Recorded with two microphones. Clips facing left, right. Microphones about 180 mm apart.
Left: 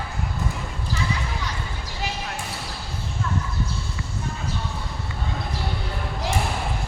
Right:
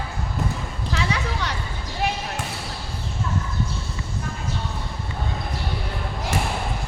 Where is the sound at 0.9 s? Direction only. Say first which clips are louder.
Right 3 dB; 75° right (ahead or behind).